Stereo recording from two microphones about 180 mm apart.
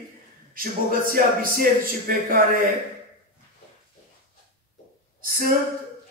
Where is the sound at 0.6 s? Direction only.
50° right (ahead or behind).